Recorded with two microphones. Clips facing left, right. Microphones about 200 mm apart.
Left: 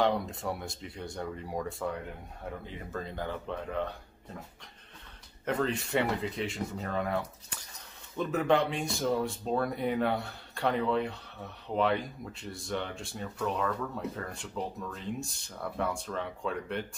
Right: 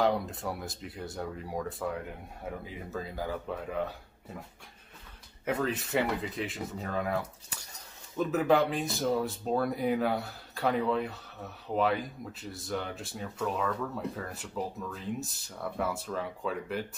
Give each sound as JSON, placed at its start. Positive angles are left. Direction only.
{"t": 0.0, "sound": "speech", "side_deg": 0}
{"t": 5.4, "sound": "speech", "side_deg": -5}